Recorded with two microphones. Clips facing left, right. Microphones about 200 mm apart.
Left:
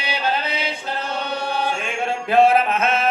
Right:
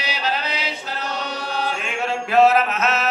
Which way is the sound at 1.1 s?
55° left (ahead or behind).